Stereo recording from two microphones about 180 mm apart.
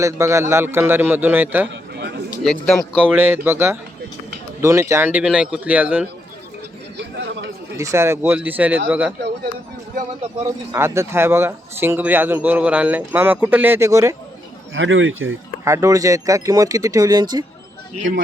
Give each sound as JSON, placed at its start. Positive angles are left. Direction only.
{"t": 0.0, "sound": "speech", "side_deg": -15}
{"t": 1.7, "sound": "a sound", "side_deg": -70}
{"t": 2.4, "sound": "speech", "side_deg": 0}
{"t": 7.8, "sound": "speech", "side_deg": -15}
{"t": 10.7, "sound": "speech", "side_deg": -15}
{"t": 14.7, "sound": "speech", "side_deg": -90}
{"t": 15.6, "sound": "speech", "side_deg": -15}